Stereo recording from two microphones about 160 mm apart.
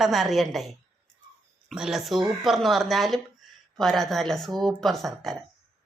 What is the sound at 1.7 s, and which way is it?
A woman's voice, centre (ahead or behind).